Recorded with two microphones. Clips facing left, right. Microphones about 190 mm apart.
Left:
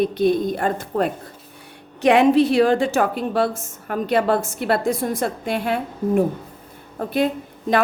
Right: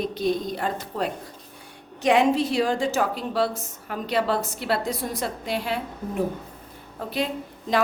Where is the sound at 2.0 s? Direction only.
60° left (ahead or behind).